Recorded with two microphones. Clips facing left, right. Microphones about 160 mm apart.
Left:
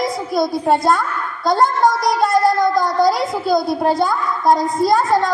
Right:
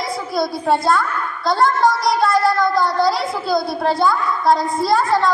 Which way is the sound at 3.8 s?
45° left (ahead or behind).